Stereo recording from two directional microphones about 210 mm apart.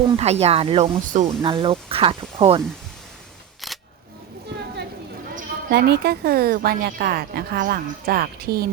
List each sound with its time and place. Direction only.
0.2 s speech: 30° right (ahead or behind)
3.6 s single-lens reflex camera: centre (ahead or behind)
5.3 s a woman's voice: 50° right (ahead or behind)